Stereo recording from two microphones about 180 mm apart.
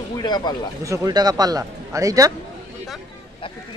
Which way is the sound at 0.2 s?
25° left (ahead or behind).